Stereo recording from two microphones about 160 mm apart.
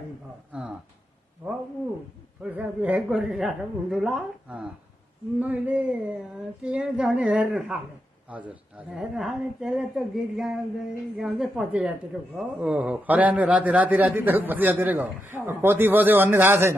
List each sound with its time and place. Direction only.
0.5 s speech: 5° right (ahead or behind)
2.4 s a woman's voice: 10° right (ahead or behind)